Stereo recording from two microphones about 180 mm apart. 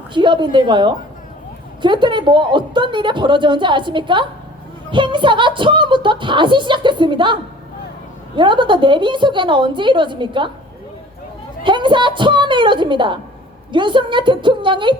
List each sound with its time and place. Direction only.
0.1 s a woman's voice: 25° right (ahead or behind)
8.4 s a woman's voice: 25° right (ahead or behind)
11.6 s a woman's voice: 25° right (ahead or behind)